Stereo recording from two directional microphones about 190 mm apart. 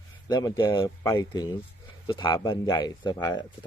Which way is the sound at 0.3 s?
20° left (ahead or behind).